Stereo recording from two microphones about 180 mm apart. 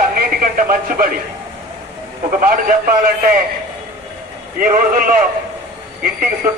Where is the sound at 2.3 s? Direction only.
50° right (ahead or behind).